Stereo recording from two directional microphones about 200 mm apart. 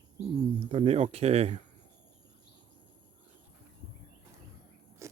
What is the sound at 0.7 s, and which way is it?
Speech, 30° right (ahead or behind).